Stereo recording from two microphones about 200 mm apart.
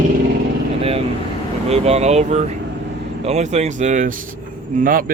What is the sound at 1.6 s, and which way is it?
Speech, 30° right (ahead or behind).